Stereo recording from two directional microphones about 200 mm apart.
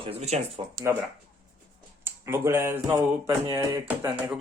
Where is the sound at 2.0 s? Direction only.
10° right (ahead or behind).